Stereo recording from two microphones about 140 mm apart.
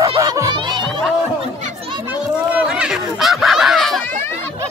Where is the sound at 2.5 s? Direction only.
5° right (ahead or behind).